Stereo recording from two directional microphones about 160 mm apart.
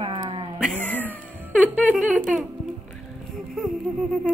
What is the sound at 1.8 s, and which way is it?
Speech, 10° right (ahead or behind).